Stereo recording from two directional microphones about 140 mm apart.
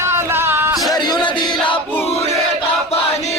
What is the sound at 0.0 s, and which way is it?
Music, 20° right (ahead or behind).